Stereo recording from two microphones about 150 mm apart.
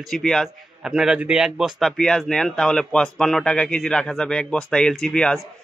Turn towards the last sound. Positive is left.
turn(degrees=5)  # may be behind; listen again after turning